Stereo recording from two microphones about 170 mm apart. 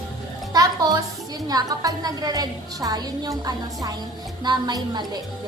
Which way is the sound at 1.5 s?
20° right (ahead or behind).